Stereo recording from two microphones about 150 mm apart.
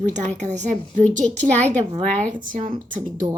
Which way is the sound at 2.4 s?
60° right (ahead or behind).